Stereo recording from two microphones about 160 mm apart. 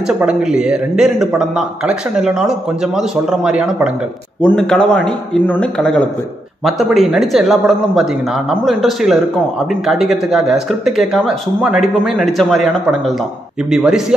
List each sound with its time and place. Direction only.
0.2 s a man's voice: 5° right (ahead or behind)
4.4 s a man's voice: 5° left (ahead or behind)